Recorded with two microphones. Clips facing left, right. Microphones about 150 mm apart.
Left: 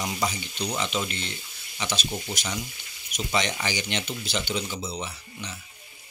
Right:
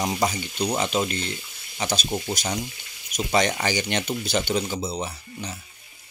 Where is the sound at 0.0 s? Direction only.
45° right (ahead or behind).